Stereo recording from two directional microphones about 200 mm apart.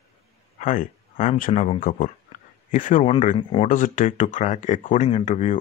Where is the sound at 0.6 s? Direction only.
40° left (ahead or behind).